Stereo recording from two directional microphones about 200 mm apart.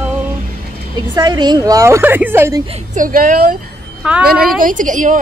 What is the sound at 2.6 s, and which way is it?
Speech, 35° right (ahead or behind).